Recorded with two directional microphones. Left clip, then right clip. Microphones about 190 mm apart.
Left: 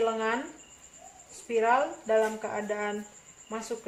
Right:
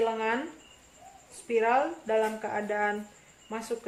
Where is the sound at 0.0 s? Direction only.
15° right (ahead or behind).